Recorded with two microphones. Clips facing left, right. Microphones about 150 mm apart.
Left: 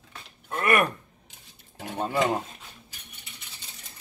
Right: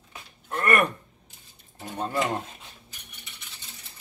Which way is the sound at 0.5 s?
10° left (ahead or behind).